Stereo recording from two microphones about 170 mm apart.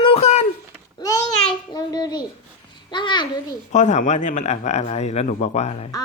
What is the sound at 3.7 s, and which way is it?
Speech, 45° left (ahead or behind).